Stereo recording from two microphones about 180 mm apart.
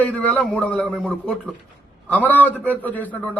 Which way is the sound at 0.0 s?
10° left (ahead or behind).